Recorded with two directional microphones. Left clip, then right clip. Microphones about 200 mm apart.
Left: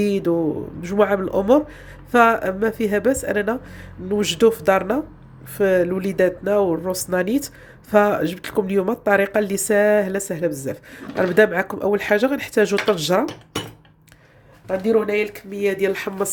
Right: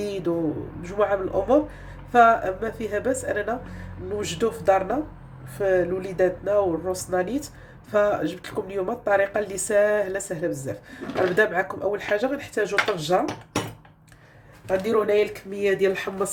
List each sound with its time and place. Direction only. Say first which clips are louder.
0.0 s speech: left 6 dB; 35° left (ahead or behind)
14.8 s speech: left 3 dB; 35° left (ahead or behind)